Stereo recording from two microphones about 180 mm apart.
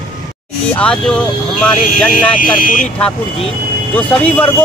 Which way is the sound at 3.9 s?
5° left (ahead or behind).